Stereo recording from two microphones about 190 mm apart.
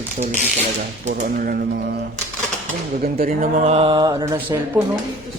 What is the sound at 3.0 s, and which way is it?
Speech, 50° right (ahead or behind).